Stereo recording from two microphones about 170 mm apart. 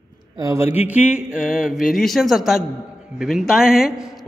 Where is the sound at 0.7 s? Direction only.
10° right (ahead or behind).